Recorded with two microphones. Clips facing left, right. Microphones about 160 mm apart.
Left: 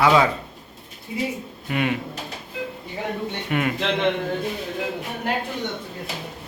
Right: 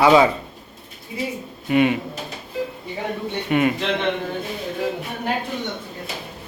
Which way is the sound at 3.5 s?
5° right (ahead or behind).